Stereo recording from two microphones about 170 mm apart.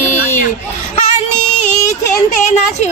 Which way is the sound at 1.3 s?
45° left (ahead or behind).